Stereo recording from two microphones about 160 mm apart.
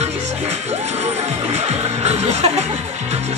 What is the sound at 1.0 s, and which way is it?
Music, 45° right (ahead or behind).